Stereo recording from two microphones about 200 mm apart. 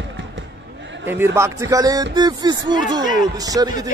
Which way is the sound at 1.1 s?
10° right (ahead or behind).